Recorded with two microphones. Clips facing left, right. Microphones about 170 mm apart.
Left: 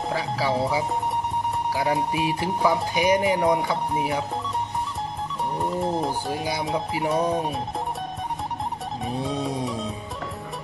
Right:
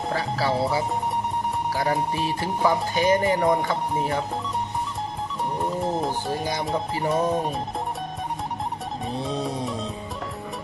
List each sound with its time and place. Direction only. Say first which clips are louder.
0.1 s speech: right 1 dB; 10° left (ahead or behind)
1.8 s speech: even; centre (ahead or behind)
2.1 s speech: left 1 dB; 10° left (ahead or behind)
5.6 s speech: left 1 dB; centre (ahead or behind)
9.0 s speech: left 1 dB; centre (ahead or behind)